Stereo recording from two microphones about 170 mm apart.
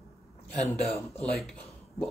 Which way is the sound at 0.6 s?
5° left (ahead or behind).